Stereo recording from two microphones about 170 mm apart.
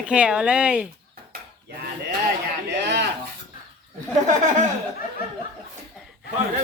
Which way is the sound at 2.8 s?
90° right.